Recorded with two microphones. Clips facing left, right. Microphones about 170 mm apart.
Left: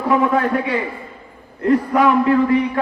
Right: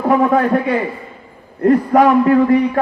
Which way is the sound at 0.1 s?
45° right (ahead or behind).